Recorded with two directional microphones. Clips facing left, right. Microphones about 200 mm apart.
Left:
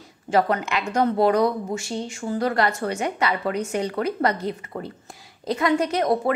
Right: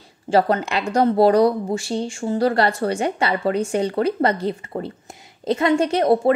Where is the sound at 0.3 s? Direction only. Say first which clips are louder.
Right 3 dB; 30° right (ahead or behind).